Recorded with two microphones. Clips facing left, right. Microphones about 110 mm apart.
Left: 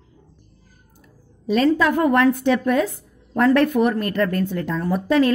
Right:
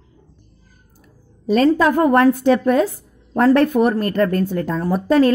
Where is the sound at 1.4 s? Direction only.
40° right (ahead or behind).